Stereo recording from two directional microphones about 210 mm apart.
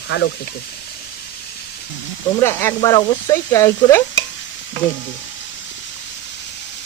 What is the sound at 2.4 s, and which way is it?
Speech, 10° left (ahead or behind).